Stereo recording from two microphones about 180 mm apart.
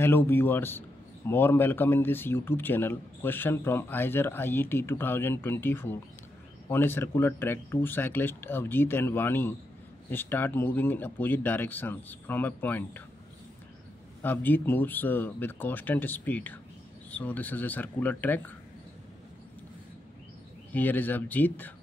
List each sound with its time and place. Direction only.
0.0 s a man's voice: 10° left (ahead or behind)
14.2 s a man's voice: 10° left (ahead or behind)
20.7 s a man's voice: 10° left (ahead or behind)